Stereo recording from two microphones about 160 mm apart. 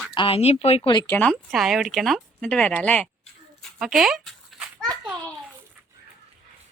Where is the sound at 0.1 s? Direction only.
35° left (ahead or behind).